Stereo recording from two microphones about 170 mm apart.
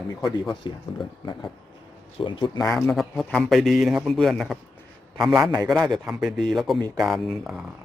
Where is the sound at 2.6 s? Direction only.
15° left (ahead or behind).